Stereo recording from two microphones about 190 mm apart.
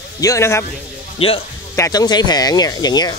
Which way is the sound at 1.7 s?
15° left (ahead or behind).